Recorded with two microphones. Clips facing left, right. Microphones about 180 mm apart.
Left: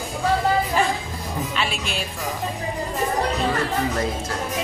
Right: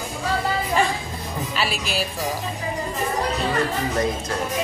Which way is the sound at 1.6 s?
5° right (ahead or behind).